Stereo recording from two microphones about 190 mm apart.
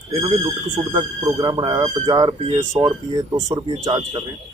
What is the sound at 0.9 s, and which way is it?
Speech, 25° right (ahead or behind).